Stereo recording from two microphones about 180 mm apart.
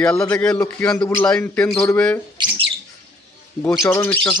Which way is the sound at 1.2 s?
5° left (ahead or behind).